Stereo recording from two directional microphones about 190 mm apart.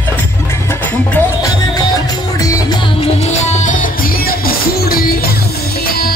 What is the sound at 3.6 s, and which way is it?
Music, 45° left (ahead or behind).